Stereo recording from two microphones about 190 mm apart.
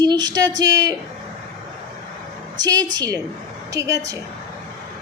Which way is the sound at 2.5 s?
20° right (ahead or behind).